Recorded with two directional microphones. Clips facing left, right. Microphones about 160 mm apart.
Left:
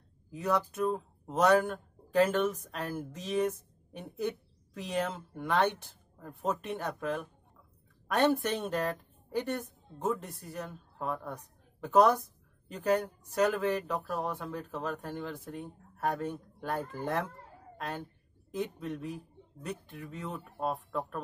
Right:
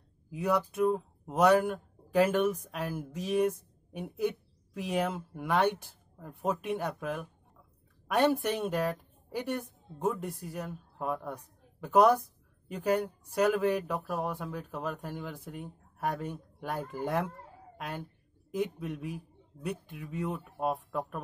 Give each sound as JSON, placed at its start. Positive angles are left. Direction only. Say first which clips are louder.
{"t": 0.3, "sound": "a woman's voice", "louder": "right 1 dB", "side_deg": -10}